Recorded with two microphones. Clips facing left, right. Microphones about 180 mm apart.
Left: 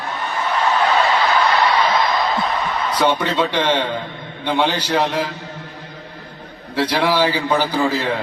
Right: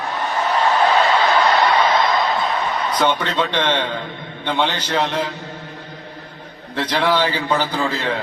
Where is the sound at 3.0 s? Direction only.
10° left (ahead or behind).